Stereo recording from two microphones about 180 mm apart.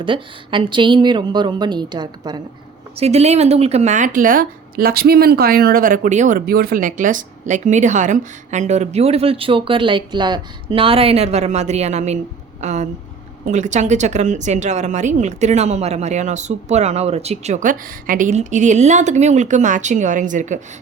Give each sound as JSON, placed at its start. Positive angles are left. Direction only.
{"t": 0.0, "sound": "a woman's voice", "side_deg": -30}
{"t": 3.0, "sound": "a woman's voice", "side_deg": -35}